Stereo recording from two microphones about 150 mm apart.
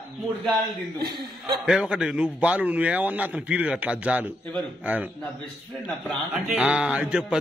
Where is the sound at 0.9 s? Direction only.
30° right (ahead or behind).